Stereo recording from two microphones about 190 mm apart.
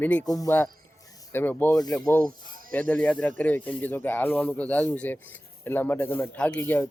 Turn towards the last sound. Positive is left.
turn(degrees=10)  # may be behind; listen again after turning